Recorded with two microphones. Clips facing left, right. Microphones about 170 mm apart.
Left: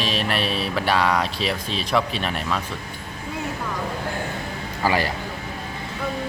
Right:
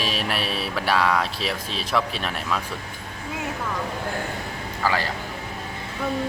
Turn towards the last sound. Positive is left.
turn(degrees=15)  # may be behind; listen again after turning